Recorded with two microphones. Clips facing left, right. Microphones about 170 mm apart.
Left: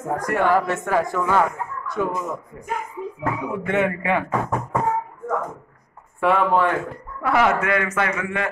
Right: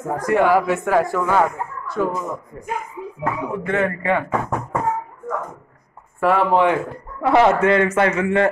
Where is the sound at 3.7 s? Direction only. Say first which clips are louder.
Right 1 dB; centre (ahead or behind).